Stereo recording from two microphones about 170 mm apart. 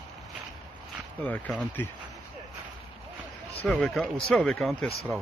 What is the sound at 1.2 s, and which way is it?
Speech, 5° left (ahead or behind).